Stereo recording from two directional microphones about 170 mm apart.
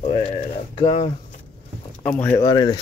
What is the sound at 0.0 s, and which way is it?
Speech, 40° left (ahead or behind).